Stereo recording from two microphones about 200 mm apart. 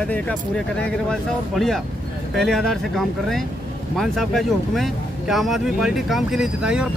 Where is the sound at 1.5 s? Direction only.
Centre (ahead or behind).